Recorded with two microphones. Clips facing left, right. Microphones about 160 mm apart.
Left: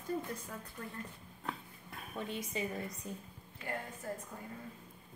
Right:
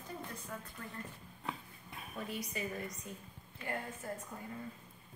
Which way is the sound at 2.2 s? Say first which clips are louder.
Left 2 dB; 25° left (ahead or behind).